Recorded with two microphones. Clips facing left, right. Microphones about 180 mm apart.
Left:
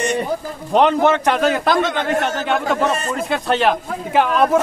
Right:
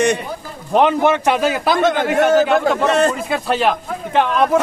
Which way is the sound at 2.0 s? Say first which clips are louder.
Right 6 dB; centre (ahead or behind).